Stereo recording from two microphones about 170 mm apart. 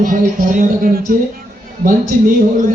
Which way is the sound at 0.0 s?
55° right (ahead or behind).